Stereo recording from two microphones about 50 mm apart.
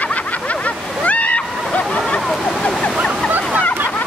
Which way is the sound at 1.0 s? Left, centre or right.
Left.